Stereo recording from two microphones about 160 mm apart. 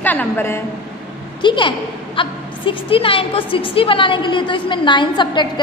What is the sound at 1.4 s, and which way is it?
A woman's voice, 30° left (ahead or behind).